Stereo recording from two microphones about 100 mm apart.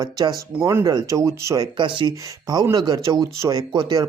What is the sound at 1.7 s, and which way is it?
Speech, 50° right (ahead or behind).